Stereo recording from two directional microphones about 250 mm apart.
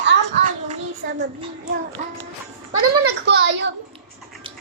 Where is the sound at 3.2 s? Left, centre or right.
Right.